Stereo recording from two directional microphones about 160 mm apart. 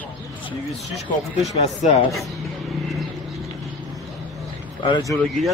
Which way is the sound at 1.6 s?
50° left (ahead or behind).